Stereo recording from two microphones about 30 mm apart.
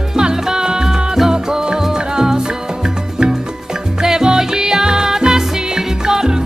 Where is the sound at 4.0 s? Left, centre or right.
Right.